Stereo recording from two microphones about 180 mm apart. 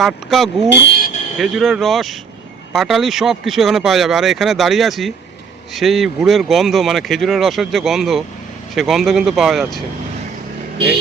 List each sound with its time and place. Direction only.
0.0 s speech: centre (ahead or behind)
0.9 s a sound: 55° left (ahead or behind)
1.4 s speech: centre (ahead or behind)